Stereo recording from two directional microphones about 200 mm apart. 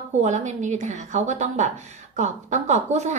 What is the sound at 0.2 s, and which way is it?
A woman's voice, 35° right (ahead or behind).